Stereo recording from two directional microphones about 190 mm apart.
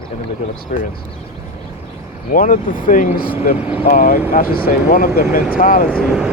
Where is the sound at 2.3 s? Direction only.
45° left (ahead or behind).